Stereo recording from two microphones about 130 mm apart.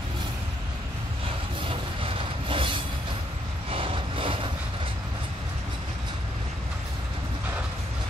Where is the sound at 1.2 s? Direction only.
45° right (ahead or behind).